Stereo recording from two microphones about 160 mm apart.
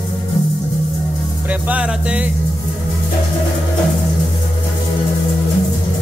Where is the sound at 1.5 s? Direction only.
10° right (ahead or behind).